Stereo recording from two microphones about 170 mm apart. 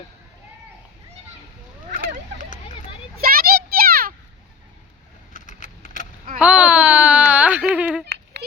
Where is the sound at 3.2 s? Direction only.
60° right (ahead or behind).